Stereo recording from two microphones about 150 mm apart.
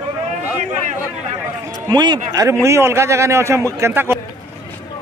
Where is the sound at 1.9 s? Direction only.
30° right (ahead or behind).